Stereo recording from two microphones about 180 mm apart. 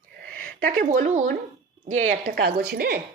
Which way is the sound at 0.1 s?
55° right (ahead or behind).